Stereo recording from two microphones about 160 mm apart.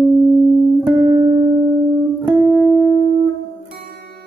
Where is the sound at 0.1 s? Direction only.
Centre (ahead or behind).